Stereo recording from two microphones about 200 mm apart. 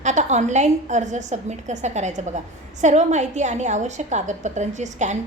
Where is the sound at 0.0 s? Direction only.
35° right (ahead or behind).